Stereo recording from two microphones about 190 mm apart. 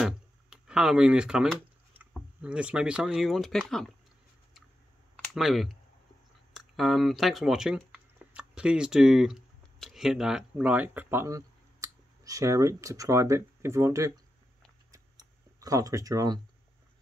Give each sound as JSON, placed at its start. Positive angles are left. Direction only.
{"t": 0.0, "sound": "speech", "side_deg": -5}
{"t": 5.1, "sound": "speech", "side_deg": 0}
{"t": 14.9, "sound": "computer keyboard", "side_deg": -20}